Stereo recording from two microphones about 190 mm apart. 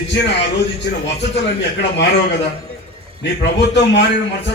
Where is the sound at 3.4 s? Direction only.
65° left (ahead or behind).